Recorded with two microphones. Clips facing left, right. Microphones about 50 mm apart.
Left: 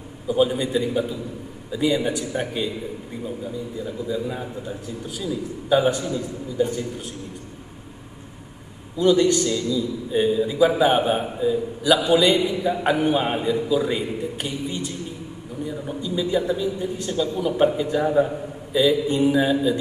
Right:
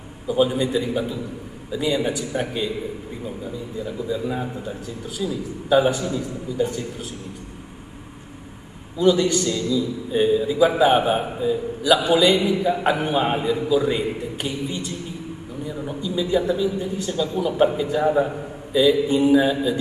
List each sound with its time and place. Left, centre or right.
0.3 s a man's voice: centre
5.0 s a man's voice: centre
8.9 s a man's voice: centre